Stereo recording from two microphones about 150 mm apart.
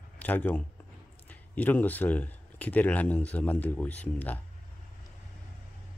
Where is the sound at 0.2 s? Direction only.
10° left (ahead or behind).